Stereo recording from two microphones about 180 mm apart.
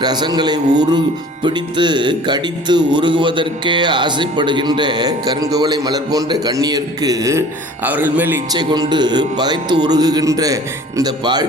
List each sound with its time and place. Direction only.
0.0 s speech: 25° right (ahead or behind)
8.5 s speech: 25° right (ahead or behind)